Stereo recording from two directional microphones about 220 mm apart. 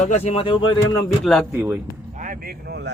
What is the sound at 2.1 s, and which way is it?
Speech, 35° right (ahead or behind).